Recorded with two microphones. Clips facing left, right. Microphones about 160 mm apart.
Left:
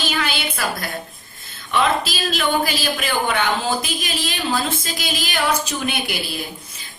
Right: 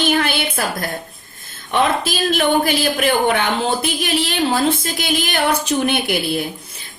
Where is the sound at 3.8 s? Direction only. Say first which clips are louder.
Right 6 dB; 65° right (ahead or behind).